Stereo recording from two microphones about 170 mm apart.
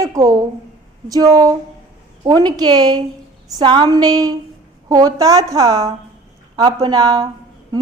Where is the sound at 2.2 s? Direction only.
25° right (ahead or behind).